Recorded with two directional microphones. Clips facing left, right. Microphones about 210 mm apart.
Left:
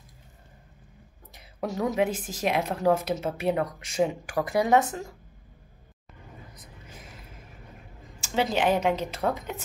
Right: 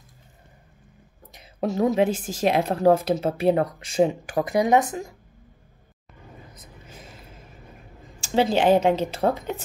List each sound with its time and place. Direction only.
1.3 s a woman's voice: 25° right (ahead or behind)
6.5 s vehicle: 25° right (ahead or behind)
8.2 s a woman's voice: 30° right (ahead or behind)